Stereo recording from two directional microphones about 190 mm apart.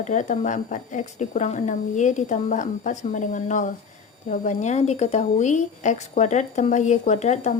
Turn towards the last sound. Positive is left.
turn(degrees=35)  # may be behind; listen again after turning